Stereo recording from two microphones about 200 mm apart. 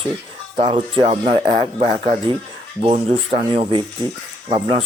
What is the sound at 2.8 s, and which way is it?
Speech, 30° right (ahead or behind).